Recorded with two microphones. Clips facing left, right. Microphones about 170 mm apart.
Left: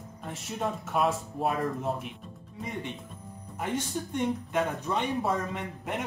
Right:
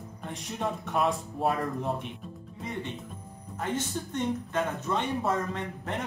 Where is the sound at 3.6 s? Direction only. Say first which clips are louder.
Even; 10° left (ahead or behind).